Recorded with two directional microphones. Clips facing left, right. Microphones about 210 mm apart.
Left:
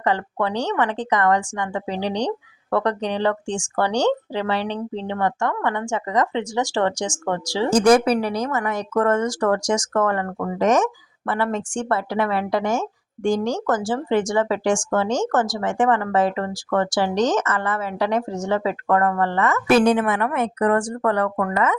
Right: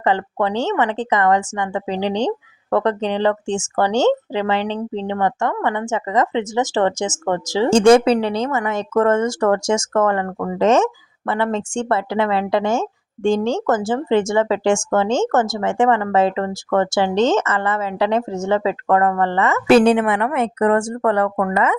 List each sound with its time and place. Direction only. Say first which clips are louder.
0.0 s speech: right 3 dB; 20° right (ahead or behind)
21.3 s speech: right 3 dB; 15° right (ahead or behind)